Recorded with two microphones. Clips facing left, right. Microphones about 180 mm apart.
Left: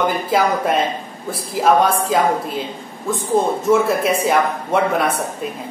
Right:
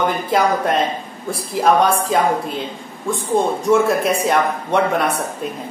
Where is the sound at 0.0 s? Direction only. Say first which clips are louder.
Even; centre (ahead or behind).